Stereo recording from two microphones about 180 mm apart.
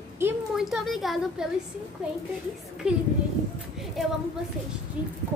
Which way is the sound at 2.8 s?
5° right (ahead or behind).